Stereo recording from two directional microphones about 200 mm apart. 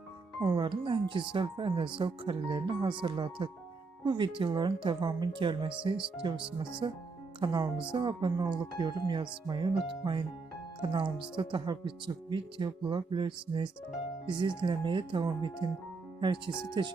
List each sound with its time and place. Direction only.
0.4 s speech: 20° right (ahead or behind)